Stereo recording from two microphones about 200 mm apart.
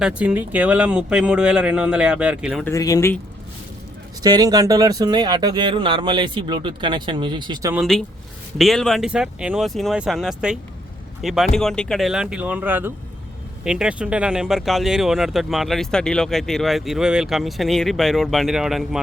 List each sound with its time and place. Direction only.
0.0 s speech: 5° right (ahead or behind)
2.6 s speech: 15° left (ahead or behind)
4.2 s speech: 20° right (ahead or behind)
7.7 s speech: centre (ahead or behind)